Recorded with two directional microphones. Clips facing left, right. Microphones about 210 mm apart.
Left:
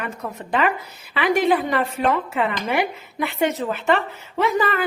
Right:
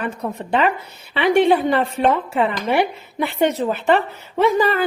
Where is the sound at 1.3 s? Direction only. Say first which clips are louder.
Right 5 dB; 30° right (ahead or behind).